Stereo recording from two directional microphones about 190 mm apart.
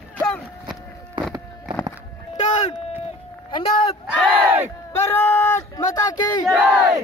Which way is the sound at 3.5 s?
30° left (ahead or behind).